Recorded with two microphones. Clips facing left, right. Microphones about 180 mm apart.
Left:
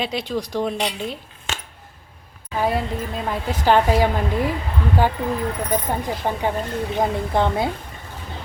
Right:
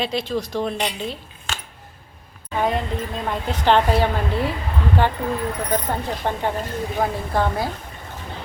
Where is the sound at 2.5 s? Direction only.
5° left (ahead or behind).